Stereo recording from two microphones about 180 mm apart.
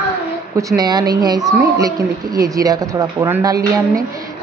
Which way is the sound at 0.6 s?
20° right (ahead or behind).